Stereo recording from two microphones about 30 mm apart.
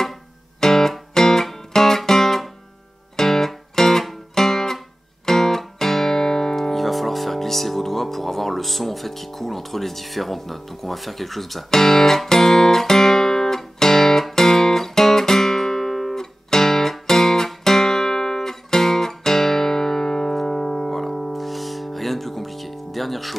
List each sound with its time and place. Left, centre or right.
0.6 s music: centre
11.7 s speech: centre
12.3 s music: centre
20.6 s music: centre